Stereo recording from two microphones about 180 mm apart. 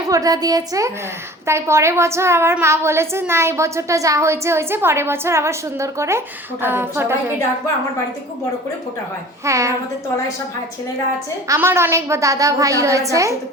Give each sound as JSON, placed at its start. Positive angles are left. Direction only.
{"t": 0.1, "sound": "a woman's voice", "side_deg": -20}
{"t": 9.4, "sound": "a woman's voice", "side_deg": -15}
{"t": 11.4, "sound": "a woman's voice", "side_deg": -15}